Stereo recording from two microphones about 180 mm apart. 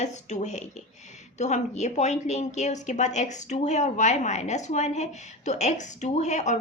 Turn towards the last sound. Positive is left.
turn(degrees=40)  # may be behind; listen again after turning